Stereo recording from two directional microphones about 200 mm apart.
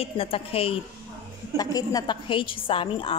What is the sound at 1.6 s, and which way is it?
A woman's voice, 20° left (ahead or behind).